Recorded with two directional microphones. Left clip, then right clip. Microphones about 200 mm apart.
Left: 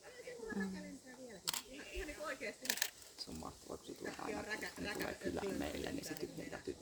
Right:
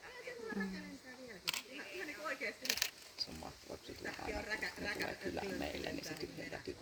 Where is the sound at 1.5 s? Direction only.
40° left (ahead or behind).